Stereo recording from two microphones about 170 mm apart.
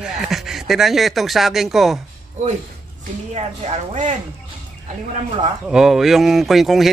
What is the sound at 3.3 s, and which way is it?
Speech, 40° right (ahead or behind).